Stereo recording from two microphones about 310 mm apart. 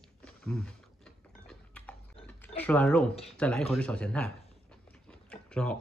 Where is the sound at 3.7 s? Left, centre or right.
Centre.